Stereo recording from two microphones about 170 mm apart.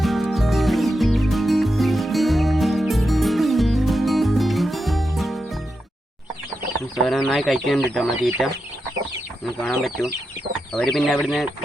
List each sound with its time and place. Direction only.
0.0 s music: centre (ahead or behind)
7.0 s speech: centre (ahead or behind)
9.6 s speech: centre (ahead or behind)